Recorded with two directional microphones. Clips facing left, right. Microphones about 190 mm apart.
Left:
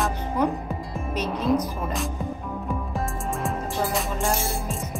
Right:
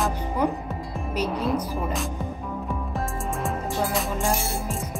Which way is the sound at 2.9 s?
Centre (ahead or behind).